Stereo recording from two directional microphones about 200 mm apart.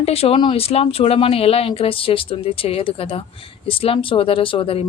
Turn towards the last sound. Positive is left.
turn(degrees=25)  # may be behind; listen again after turning